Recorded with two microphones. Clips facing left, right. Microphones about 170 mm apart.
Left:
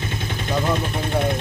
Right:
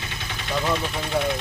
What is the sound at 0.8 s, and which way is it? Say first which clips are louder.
Speech: left 2 dB; 50° left (ahead or behind).